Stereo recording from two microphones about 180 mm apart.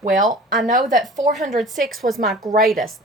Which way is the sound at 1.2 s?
45° right (ahead or behind).